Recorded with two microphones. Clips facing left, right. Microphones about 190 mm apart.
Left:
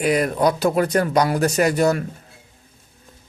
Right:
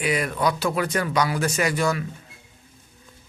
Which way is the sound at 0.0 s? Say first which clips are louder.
Left 5 dB; 40° left (ahead or behind).